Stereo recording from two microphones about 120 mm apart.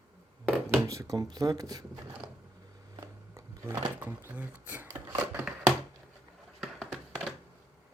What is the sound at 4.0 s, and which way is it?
Dishes, 15° right (ahead or behind).